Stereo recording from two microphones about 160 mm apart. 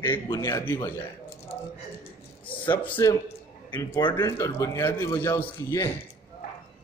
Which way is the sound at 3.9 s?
30° left (ahead or behind).